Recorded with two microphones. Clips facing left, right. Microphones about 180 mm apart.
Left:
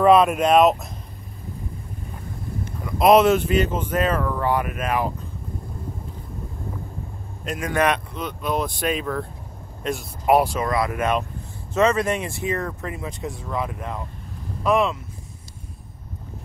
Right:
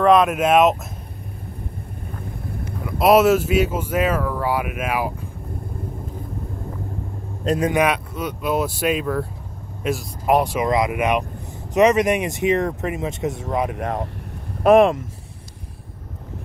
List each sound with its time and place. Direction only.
0.0 s speech: centre (ahead or behind)
2.8 s speech: 5° right (ahead or behind)
7.4 s speech: 35° right (ahead or behind)
7.7 s speech: 10° right (ahead or behind)
10.6 s speech: 15° right (ahead or behind)
13.7 s speech: 75° right (ahead or behind)
14.6 s speech: 55° right (ahead or behind)